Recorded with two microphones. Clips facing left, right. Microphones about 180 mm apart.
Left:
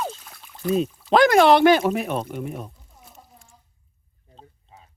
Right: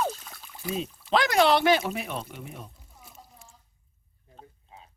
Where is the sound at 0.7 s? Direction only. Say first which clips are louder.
Left 7 dB; 50° left (ahead or behind).